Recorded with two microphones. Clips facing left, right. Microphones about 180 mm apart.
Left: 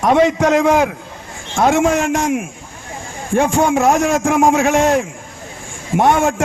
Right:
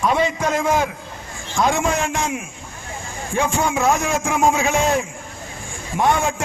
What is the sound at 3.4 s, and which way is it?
A man's voice, 45° left (ahead or behind).